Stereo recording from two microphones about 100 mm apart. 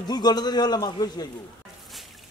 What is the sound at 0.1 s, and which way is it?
A man's voice, 45° left (ahead or behind).